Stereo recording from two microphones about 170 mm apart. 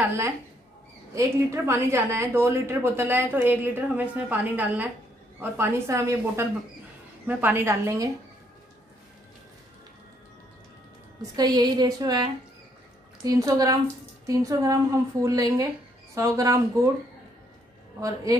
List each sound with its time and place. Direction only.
1.1 s a woman's voice: 15° right (ahead or behind)
11.3 s a woman's voice: 25° right (ahead or behind)